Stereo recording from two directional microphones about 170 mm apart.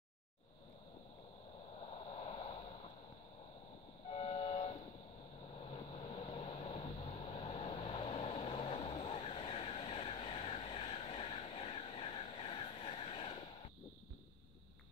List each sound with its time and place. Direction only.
1.9 s a sound: 35° left (ahead or behind)
4.1 s train: 35° left (ahead or behind)
5.7 s vehicle: 35° left (ahead or behind)